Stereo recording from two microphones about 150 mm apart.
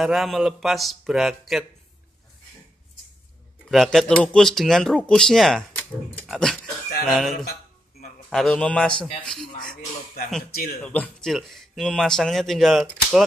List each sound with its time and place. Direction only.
0.0 s speech: centre (ahead or behind)
3.6 s speech: centre (ahead or behind)
10.5 s a man's voice: 90° left
10.8 s speech: 10° left (ahead or behind)